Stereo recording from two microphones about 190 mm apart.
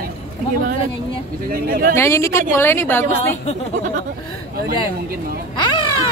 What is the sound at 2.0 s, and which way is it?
A woman's voice, 15° left (ahead or behind).